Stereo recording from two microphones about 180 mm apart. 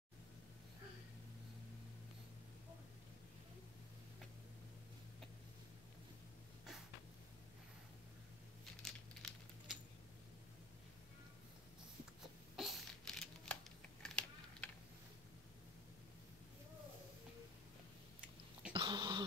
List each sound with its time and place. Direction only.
8.8 s a sound: 5° left (ahead or behind)
12.5 s typing: centre (ahead or behind)
18.7 s throat clearing: 25° right (ahead or behind)